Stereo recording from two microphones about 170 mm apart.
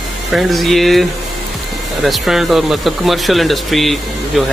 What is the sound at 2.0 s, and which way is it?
Speech, centre (ahead or behind).